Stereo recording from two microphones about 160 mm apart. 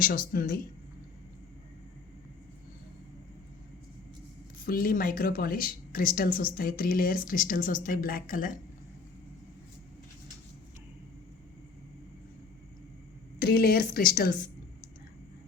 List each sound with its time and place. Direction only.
0.3 s speech: 60° left (ahead or behind)
4.5 s speech: 65° left (ahead or behind)
13.4 s a woman's voice: 75° left (ahead or behind)